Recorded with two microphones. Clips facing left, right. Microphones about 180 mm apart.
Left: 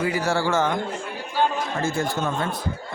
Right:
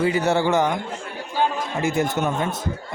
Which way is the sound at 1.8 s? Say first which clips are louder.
Right 5 dB; 20° right (ahead or behind).